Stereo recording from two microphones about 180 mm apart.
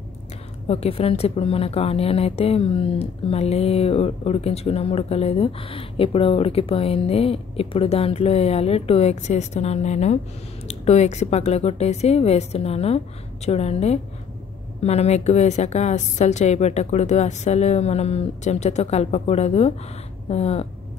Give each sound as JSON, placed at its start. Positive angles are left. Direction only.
{"t": 0.7, "sound": "speech", "side_deg": 35}